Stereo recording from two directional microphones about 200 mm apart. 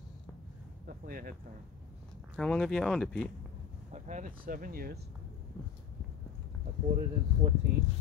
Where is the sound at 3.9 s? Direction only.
35° right (ahead or behind).